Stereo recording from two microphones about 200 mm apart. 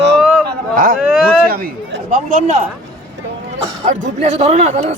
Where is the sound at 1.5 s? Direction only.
50° right (ahead or behind).